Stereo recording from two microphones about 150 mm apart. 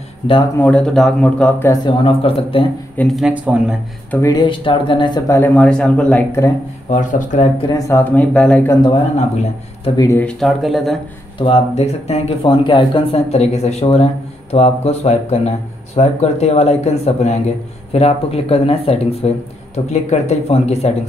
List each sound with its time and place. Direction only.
0.6 s speech: 5° left (ahead or behind)
1.7 s speech: 30° left (ahead or behind)
3.0 s speech: centre (ahead or behind)
4.1 s speech: 20° left (ahead or behind)
5.3 s speech: 10° left (ahead or behind)
6.9 s speech: 55° left (ahead or behind)
7.7 s speech: 15° left (ahead or behind)
9.9 s speech: 20° left (ahead or behind)
10.2 s speech: centre (ahead or behind)
11.3 s speech: 40° left (ahead or behind)